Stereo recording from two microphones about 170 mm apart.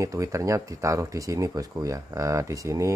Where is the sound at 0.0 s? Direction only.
20° right (ahead or behind).